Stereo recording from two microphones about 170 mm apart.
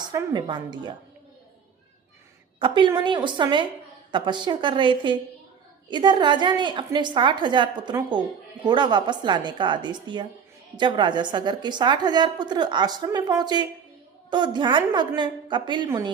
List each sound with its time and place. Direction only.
0.0 s a woman's voice: 20° right (ahead or behind)
2.6 s a woman's voice: 30° right (ahead or behind)